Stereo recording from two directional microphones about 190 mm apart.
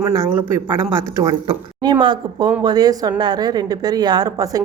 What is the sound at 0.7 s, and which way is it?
A woman's voice, 20° right (ahead or behind).